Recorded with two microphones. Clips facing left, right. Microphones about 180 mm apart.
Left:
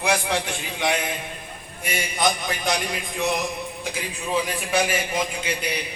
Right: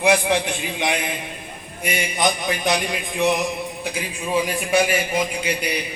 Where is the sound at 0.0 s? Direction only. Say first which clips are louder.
Right 5 dB; 20° right (ahead or behind).